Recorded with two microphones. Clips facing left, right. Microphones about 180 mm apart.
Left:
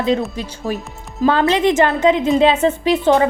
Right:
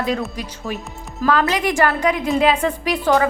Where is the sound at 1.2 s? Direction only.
25° left (ahead or behind).